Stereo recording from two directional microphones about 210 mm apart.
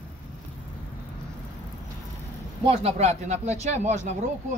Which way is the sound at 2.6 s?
30° right (ahead or behind).